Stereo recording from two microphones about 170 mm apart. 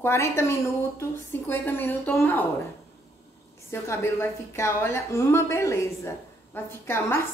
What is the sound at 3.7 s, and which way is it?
A woman's voice, 15° left (ahead or behind).